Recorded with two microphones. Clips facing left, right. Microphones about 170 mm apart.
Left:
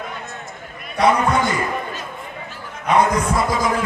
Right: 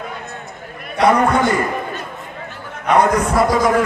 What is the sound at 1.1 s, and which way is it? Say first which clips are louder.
Speech: right 4 dB; 50° right (ahead or behind).